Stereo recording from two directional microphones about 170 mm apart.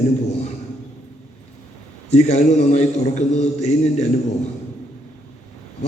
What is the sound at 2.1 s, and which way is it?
A man's voice, 40° left (ahead or behind).